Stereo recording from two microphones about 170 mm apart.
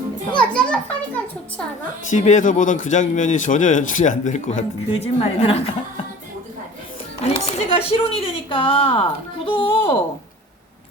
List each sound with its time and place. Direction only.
0.3 s a child's voice: 5° left (ahead or behind)
2.0 s speech: 45° left (ahead or behind)
7.4 s speech: 35° left (ahead or behind)